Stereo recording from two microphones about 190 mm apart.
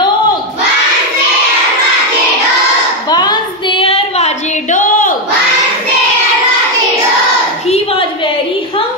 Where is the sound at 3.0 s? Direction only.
20° left (ahead or behind); by 5.2 s 45° left (ahead or behind).